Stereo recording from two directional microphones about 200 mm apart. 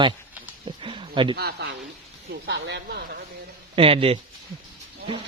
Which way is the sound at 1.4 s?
55° right (ahead or behind).